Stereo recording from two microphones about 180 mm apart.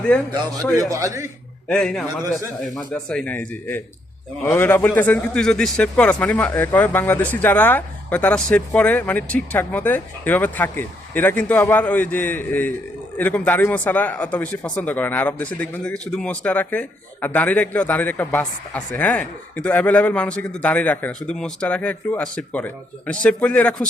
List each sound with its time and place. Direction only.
0.8 s speech: 15° right (ahead or behind)
1.6 s speech: 5° left (ahead or behind)